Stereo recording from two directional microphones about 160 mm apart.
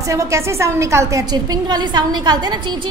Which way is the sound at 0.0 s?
20° right (ahead or behind).